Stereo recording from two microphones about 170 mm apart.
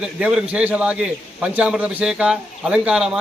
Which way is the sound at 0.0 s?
5° right (ahead or behind).